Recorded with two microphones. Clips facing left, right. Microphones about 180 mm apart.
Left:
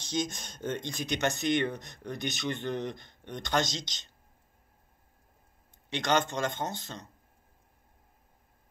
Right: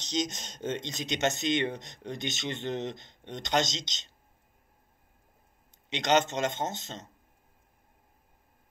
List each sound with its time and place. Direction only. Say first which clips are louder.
0.0 s speech: right 1 dB; 20° right (ahead or behind)
5.9 s speech: right 2 dB; 20° right (ahead or behind)